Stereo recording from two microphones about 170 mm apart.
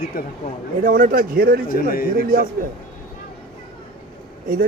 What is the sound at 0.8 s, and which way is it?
Speech, 55° right (ahead or behind).